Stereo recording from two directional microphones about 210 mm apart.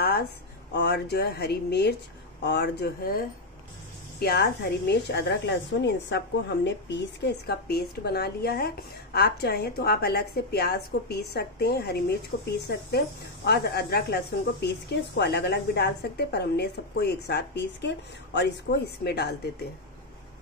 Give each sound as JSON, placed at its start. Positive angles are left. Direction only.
{"t": 0.7, "sound": "a woman's voice", "side_deg": 50}